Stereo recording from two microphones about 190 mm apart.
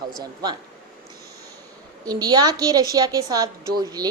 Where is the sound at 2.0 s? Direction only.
20° right (ahead or behind).